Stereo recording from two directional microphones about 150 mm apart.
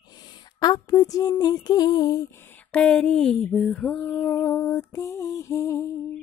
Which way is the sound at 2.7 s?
5° left (ahead or behind).